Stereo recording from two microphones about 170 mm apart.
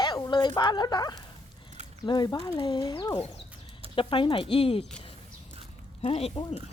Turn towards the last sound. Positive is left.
turn(degrees=35)  # may be behind; listen again after turning